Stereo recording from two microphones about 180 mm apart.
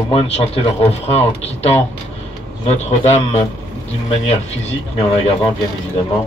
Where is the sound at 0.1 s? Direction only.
35° left (ahead or behind).